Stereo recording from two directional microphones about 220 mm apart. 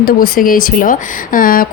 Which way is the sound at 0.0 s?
40° left (ahead or behind).